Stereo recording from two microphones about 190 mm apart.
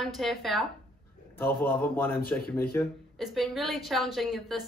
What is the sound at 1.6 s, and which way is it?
A man's voice, 10° left (ahead or behind).